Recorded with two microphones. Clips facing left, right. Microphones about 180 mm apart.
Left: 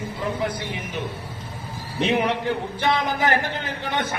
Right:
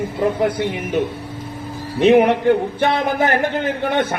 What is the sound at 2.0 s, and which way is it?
A man's voice, 50° right (ahead or behind).